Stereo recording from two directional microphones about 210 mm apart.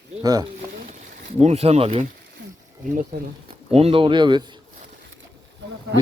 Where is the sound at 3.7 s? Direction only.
25° right (ahead or behind).